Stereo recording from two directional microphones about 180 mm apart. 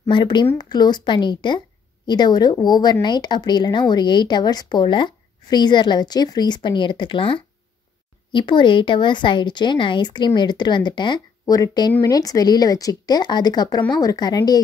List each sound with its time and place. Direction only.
0.0 s speech: 25° left (ahead or behind)